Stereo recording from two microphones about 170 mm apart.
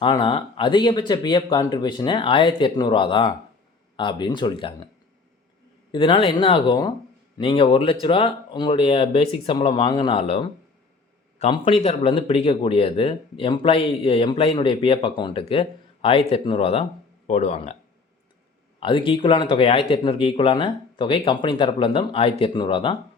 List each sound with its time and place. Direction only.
0.0 s speech: 30° left (ahead or behind)
5.9 s speech: 30° left (ahead or behind)
18.8 s speech: 30° left (ahead or behind)